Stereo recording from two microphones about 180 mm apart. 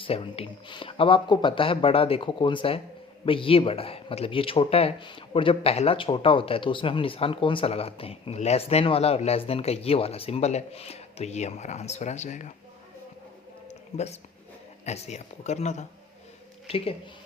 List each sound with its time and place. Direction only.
0.0 s speech: 30° left (ahead or behind)
13.7 s a sound: 40° left (ahead or behind)
14.8 s speech: 35° left (ahead or behind)